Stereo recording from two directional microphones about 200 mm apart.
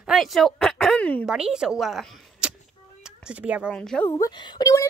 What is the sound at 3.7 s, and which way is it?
A woman's voice, 5° left (ahead or behind).